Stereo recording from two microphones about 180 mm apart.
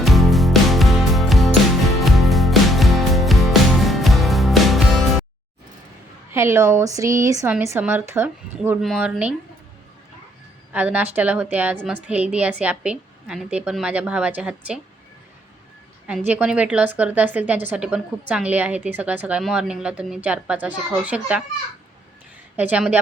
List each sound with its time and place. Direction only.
0.0 s music: centre (ahead or behind)
6.3 s a woman's voice: 15° right (ahead or behind)
10.7 s a woman's voice: 10° right (ahead or behind)
16.0 s a woman's voice: 10° right (ahead or behind)
22.5 s a woman's voice: 10° right (ahead or behind)